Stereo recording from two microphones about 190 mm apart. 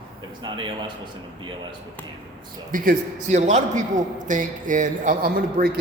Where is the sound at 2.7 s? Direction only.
45° right (ahead or behind).